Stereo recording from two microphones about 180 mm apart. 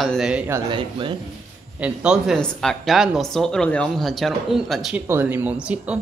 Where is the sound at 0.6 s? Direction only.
25° right (ahead or behind).